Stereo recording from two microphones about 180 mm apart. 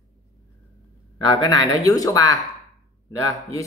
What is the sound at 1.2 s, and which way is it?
Speech, 20° left (ahead or behind).